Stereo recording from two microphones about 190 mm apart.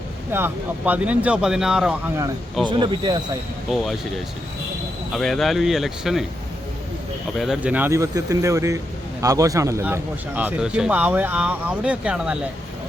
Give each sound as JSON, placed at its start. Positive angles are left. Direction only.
{"t": 0.3, "sound": "speech", "side_deg": -10}
{"t": 2.6, "sound": "speech", "side_deg": -20}
{"t": 3.7, "sound": "speech", "side_deg": 0}
{"t": 5.1, "sound": "speech", "side_deg": 0}
{"t": 7.3, "sound": "speech", "side_deg": -5}